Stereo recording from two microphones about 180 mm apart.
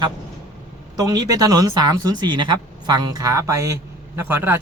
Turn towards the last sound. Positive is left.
turn(degrees=-10)  # may be behind; listen again after turning